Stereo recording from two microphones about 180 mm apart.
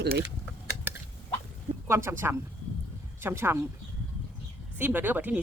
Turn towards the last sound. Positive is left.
turn(degrees=-10)  # may be behind; listen again after turning